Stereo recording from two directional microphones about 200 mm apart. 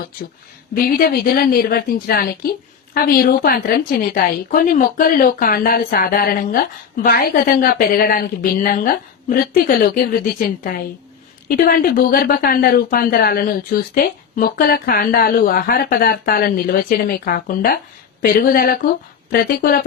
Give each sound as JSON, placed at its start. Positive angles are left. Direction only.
{"t": 0.8, "sound": "a woman's voice", "side_deg": 50}